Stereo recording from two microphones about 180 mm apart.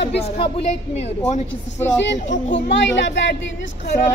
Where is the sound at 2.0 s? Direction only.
85° left.